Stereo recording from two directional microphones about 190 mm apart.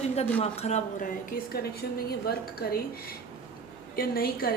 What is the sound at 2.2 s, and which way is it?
A woman's voice, 55° left (ahead or behind).